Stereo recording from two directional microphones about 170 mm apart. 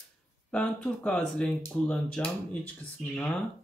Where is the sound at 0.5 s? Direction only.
5° left (ahead or behind).